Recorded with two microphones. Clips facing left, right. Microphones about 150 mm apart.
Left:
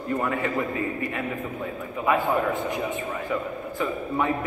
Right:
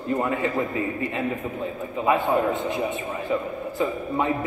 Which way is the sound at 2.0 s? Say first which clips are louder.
Right 2 dB; 20° right (ahead or behind).